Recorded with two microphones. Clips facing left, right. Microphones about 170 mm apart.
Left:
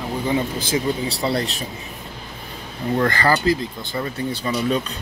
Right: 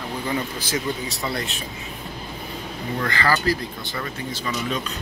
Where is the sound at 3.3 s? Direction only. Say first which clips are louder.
Left 3 dB; 20° left (ahead or behind).